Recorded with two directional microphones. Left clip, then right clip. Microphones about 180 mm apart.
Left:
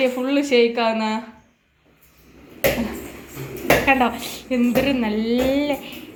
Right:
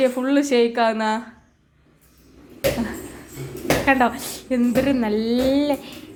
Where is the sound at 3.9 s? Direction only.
20° right (ahead or behind).